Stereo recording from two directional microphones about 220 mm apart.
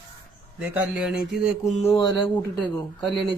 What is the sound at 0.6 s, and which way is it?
Speech, 5° right (ahead or behind).